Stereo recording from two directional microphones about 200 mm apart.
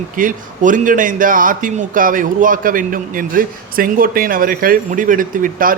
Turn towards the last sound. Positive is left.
turn(degrees=-45)  # may be behind; listen again after turning